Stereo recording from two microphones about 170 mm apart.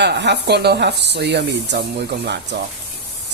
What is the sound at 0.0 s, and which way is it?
Speech, 85° right.